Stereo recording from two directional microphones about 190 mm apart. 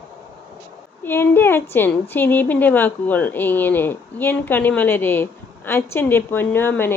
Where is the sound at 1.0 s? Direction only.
10° left (ahead or behind).